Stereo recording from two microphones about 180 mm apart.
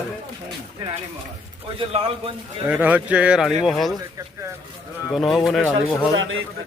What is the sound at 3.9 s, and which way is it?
Speech, 15° right (ahead or behind).